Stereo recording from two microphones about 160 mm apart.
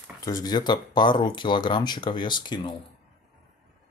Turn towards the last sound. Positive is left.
turn(degrees=30)  # may be behind; listen again after turning